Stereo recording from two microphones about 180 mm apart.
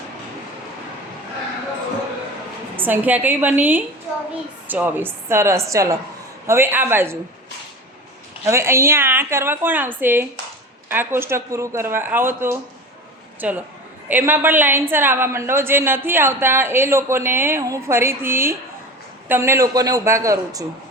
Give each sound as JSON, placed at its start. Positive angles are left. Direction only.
{"t": 2.7, "sound": "a woman's voice", "side_deg": -10}
{"t": 8.4, "sound": "a woman's voice", "side_deg": -15}